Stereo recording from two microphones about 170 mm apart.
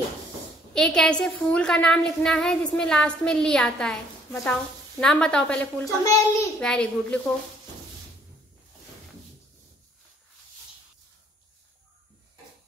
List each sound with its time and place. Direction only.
0.7 s a woman's voice: 5° left (ahead or behind)
5.9 s a child's voice: 20° left (ahead or behind)
6.6 s a woman's voice: 5° left (ahead or behind)